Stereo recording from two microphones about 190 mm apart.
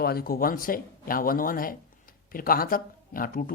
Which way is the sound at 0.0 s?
55° left (ahead or behind).